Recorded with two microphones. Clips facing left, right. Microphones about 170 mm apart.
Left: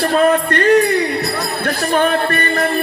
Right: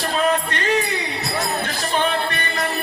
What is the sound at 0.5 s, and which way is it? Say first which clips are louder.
Music: left 9 dB; 55° left (ahead or behind).